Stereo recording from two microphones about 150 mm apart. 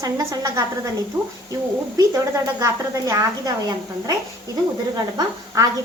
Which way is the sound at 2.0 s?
20° right (ahead or behind).